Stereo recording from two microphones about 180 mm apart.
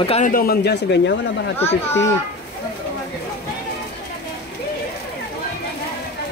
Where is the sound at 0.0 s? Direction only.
35° left (ahead or behind).